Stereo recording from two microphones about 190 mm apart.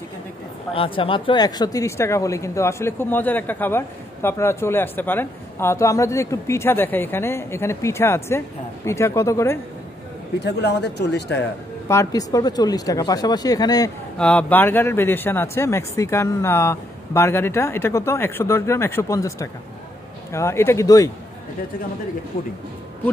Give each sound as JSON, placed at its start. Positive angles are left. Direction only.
{"t": 0.7, "sound": "speech", "side_deg": 30}
{"t": 10.4, "sound": "speech", "side_deg": 60}
{"t": 11.9, "sound": "speech", "side_deg": 20}
{"t": 14.1, "sound": "speech", "side_deg": 5}